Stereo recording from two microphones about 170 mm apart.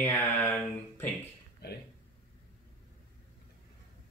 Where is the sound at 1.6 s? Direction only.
70° left (ahead or behind).